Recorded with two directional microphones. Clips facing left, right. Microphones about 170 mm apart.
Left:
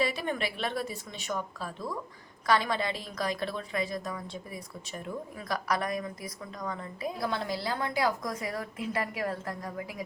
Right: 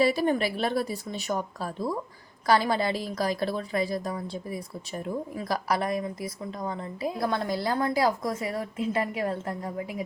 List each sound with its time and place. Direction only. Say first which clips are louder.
0.0 s a woman's voice: right 7 dB; 35° right (ahead or behind)
7.2 s a woman's voice: right 4 dB; 45° right (ahead or behind); by 10.0 s 25° right (ahead or behind)